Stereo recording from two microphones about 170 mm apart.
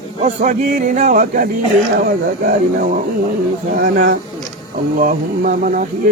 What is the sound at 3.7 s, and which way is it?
Speech, 50° right (ahead or behind).